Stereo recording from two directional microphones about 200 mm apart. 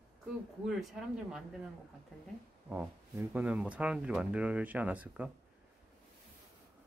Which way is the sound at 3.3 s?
5° right (ahead or behind).